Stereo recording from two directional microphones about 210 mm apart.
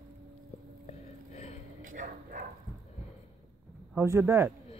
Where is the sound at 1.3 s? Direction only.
30° left (ahead or behind).